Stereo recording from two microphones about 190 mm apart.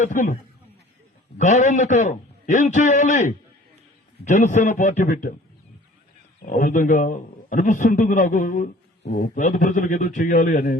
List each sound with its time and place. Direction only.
0.0 s a man's voice: 45° left (ahead or behind)
1.4 s a man's voice: 40° left (ahead or behind)
6.4 s a man's voice: 45° left (ahead or behind)